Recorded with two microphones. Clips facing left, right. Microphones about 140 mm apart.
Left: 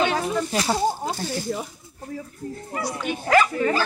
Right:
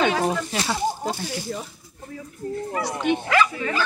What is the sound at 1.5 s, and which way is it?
Speech, 35° left (ahead or behind).